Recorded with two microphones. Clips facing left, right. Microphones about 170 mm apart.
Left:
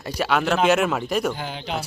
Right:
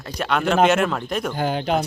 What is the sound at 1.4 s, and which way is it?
Speech, 50° right (ahead or behind).